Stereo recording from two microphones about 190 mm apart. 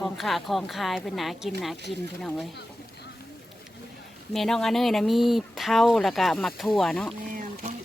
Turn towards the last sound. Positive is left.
turn(degrees=-40)  # may be behind; listen again after turning